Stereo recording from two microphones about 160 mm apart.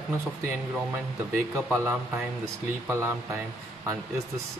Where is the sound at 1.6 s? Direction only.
15° right (ahead or behind).